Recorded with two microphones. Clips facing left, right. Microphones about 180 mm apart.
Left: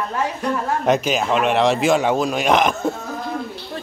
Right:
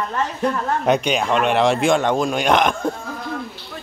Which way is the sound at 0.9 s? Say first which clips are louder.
Even; centre (ahead or behind).